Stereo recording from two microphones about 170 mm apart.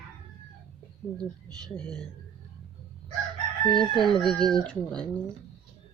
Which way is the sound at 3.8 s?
Centre (ahead or behind).